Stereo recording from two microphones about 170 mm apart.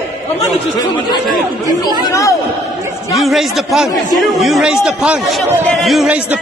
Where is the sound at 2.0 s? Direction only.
20° left (ahead or behind).